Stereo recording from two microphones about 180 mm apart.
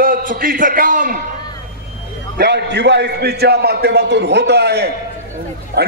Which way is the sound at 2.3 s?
65° right (ahead or behind).